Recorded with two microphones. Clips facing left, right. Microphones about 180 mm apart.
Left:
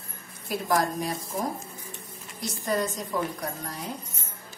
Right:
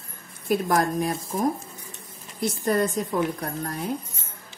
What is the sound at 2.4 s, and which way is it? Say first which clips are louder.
Speech: right 5 dB; 55° right (ahead or behind).